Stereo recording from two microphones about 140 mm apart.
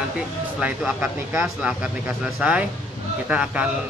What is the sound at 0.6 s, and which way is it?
Speech, 5° right (ahead or behind).